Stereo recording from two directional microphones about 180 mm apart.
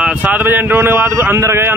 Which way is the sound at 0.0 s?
10° right (ahead or behind).